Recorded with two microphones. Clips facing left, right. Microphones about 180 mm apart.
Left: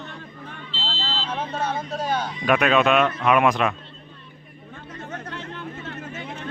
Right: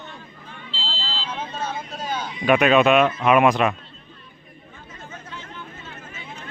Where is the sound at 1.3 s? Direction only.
65° left (ahead or behind).